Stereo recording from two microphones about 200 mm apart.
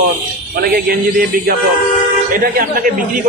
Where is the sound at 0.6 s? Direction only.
50° right (ahead or behind).